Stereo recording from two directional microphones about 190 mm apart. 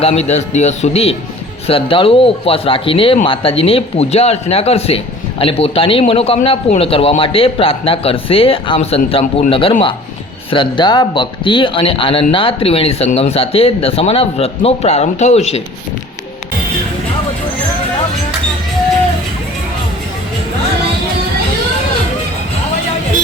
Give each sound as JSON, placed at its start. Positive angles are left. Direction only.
{"t": 0.0, "sound": "speech", "side_deg": 35}